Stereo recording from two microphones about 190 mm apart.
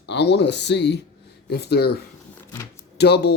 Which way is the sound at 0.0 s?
65° left (ahead or behind).